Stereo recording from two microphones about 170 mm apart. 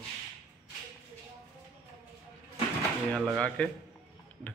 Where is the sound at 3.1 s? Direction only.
Centre (ahead or behind).